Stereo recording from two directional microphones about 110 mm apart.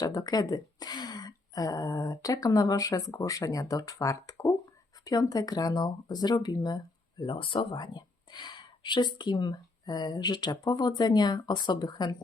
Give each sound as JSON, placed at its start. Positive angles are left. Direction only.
{"t": 0.0, "sound": "speech", "side_deg": 30}